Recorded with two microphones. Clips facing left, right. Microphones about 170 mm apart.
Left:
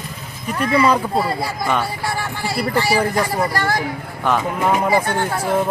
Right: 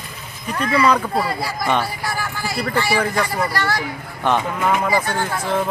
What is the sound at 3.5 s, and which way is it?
Speech, 45° left (ahead or behind).